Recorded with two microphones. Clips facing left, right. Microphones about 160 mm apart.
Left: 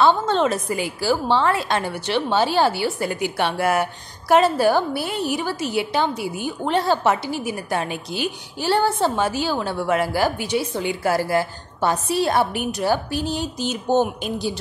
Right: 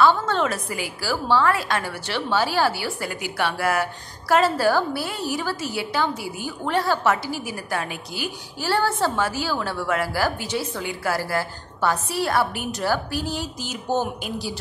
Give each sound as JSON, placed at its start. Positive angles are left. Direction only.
{"t": 0.0, "sound": "a woman's voice", "side_deg": 25}